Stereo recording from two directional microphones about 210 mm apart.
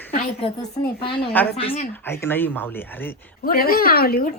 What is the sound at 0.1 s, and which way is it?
Speech, 30° left (ahead or behind).